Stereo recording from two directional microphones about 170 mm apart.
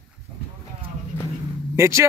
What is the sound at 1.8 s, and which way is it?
Speech, 15° right (ahead or behind).